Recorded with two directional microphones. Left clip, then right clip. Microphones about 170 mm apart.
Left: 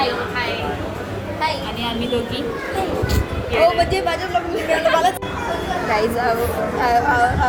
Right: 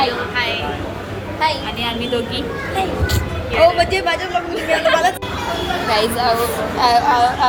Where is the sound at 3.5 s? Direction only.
10° right (ahead or behind).